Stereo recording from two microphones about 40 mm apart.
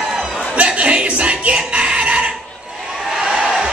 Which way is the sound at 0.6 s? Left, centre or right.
Right.